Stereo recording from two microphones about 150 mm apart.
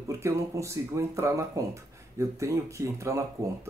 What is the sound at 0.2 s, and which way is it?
Speech, 20° right (ahead or behind).